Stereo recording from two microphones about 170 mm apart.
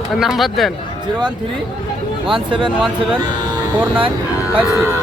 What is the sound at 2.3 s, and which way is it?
Speech, 30° right (ahead or behind).